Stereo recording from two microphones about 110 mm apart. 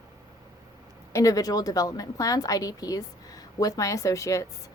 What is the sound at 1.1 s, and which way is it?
A woman's voice, 35° left (ahead or behind).